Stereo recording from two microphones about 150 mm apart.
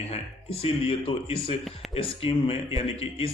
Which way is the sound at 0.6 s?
40° left (ahead or behind).